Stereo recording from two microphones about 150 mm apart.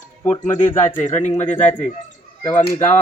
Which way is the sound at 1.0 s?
50° left (ahead or behind).